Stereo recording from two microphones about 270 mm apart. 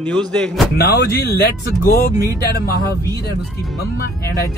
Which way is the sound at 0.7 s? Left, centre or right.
Left.